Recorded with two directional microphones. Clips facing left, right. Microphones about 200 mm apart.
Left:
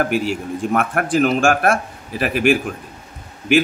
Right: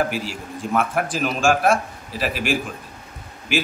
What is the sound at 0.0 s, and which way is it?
A man's voice, 55° left (ahead or behind).